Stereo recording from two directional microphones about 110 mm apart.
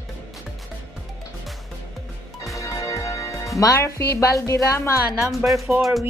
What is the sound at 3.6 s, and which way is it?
Speech, 25° left (ahead or behind).